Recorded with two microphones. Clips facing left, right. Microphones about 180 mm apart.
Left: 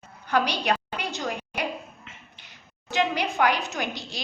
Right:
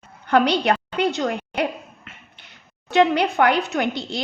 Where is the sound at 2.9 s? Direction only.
65° right (ahead or behind).